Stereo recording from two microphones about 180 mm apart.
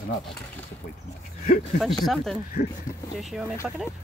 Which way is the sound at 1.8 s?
Centre (ahead or behind).